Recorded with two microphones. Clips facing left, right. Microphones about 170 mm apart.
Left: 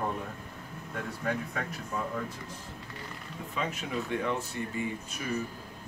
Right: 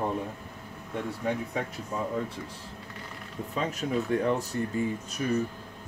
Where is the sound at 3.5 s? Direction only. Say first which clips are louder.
Right 5 dB; 40° right (ahead or behind).